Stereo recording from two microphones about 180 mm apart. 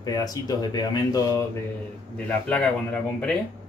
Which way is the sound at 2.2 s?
5° left (ahead or behind).